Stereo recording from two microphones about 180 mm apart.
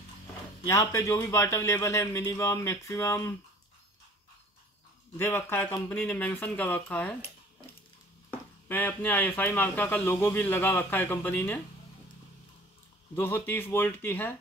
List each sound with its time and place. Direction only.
0.7 s speech: 15° left (ahead or behind)
5.1 s speech: 10° left (ahead or behind)
8.3 s speech: 10° left (ahead or behind)
13.1 s speech: 10° left (ahead or behind)